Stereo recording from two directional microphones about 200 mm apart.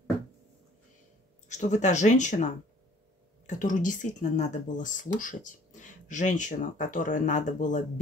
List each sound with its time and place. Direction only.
1.5 s speech: 35° left (ahead or behind)